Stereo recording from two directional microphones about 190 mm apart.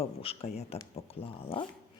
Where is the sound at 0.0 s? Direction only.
30° left (ahead or behind).